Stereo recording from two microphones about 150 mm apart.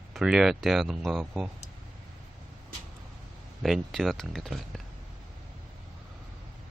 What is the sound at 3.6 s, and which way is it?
Speech, centre (ahead or behind).